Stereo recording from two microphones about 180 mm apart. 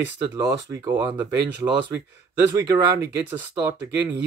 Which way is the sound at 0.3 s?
15° right (ahead or behind).